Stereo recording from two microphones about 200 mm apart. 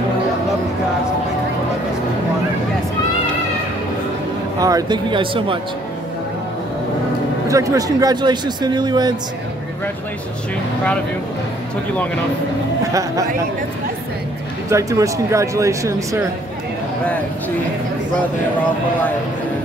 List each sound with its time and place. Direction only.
4.6 s speech: 20° right (ahead or behind)
7.4 s speech: 15° right (ahead or behind)
12.9 s speech: 15° right (ahead or behind)
14.7 s speech: 15° right (ahead or behind)